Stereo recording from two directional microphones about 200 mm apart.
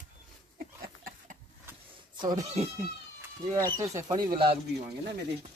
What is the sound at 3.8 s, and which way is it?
Speech, 15° right (ahead or behind).